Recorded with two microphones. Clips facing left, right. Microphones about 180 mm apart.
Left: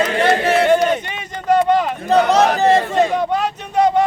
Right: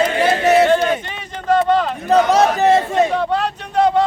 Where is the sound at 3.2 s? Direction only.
15° left (ahead or behind).